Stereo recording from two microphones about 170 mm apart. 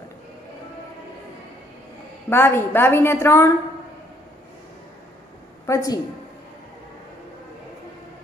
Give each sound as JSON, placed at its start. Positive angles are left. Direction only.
{"t": 2.2, "sound": "a woman's voice", "side_deg": 15}
{"t": 5.7, "sound": "a woman's voice", "side_deg": 20}